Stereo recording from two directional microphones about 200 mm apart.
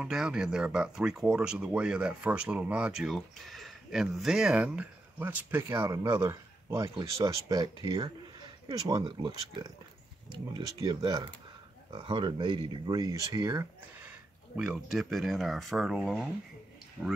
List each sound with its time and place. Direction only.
0.0 s speech: 5° right (ahead or behind)
14.6 s speech: 5° right (ahead or behind)